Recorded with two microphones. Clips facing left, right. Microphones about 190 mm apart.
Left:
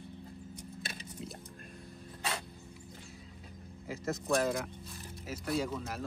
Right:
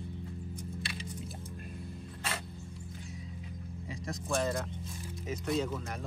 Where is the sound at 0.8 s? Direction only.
45° left (ahead or behind).